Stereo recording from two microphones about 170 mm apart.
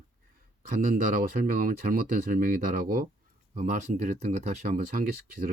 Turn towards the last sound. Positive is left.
turn(degrees=-55)  # may be behind; listen again after turning